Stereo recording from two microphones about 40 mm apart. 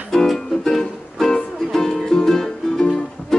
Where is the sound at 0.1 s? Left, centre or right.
Centre.